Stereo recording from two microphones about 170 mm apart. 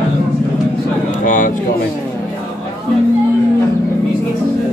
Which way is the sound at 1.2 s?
50° left (ahead or behind).